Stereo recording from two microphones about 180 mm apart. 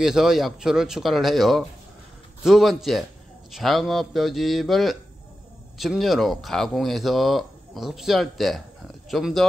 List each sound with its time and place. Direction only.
0.0 s speech: centre (ahead or behind)